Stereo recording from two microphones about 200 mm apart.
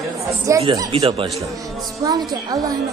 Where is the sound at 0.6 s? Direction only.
25° right (ahead or behind).